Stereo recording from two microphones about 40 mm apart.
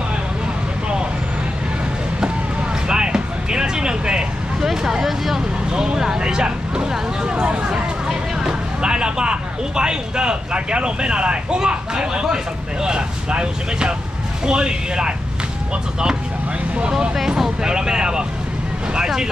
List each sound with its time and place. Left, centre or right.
2.9 s vehicle: centre
4.6 s a sound: centre
5.0 s vehicle: centre
5.7 s vehicle: centre
12.8 s speech: right
17.4 s a sound: centre
18.9 s speech: centre